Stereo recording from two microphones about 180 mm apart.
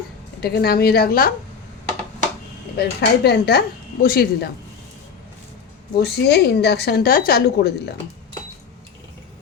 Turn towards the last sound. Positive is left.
turn(degrees=65)  # may be behind; listen again after turning